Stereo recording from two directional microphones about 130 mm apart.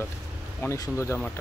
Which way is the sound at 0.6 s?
25° left (ahead or behind).